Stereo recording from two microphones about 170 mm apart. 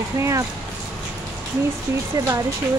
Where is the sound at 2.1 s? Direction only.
20° right (ahead or behind).